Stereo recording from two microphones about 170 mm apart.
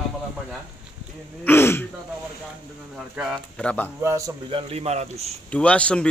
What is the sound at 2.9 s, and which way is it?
Speech, 5° right (ahead or behind).